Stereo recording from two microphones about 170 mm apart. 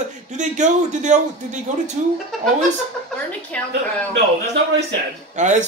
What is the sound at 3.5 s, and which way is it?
Speech, 5° left (ahead or behind).